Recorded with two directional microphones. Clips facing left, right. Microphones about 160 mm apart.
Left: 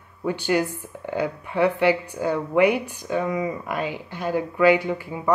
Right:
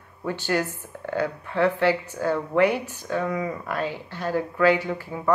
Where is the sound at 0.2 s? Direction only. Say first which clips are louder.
Left 3 dB; 15° left (ahead or behind).